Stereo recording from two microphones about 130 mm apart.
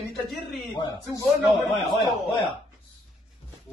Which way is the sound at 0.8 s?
35° left (ahead or behind).